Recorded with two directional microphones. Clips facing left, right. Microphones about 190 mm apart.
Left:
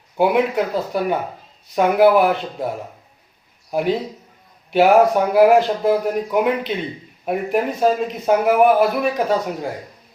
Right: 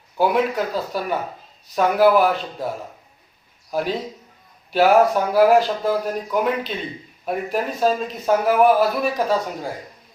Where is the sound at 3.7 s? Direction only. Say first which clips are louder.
Left 4 dB; 20° left (ahead or behind).